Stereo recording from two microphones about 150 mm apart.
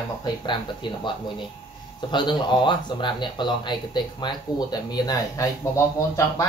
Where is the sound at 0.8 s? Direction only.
35° left (ahead or behind).